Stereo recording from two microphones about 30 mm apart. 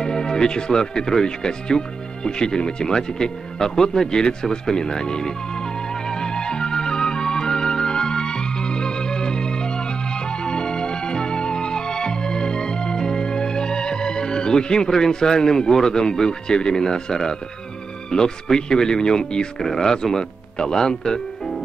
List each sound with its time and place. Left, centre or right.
0.0 s speech: left
3.1 s music: left
18.1 s speech: left
19.6 s speech: centre